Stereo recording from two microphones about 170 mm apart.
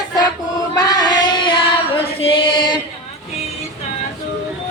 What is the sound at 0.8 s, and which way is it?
Female singing, 20° left (ahead or behind).